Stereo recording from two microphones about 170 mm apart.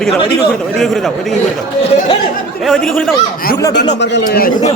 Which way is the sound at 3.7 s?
90° left.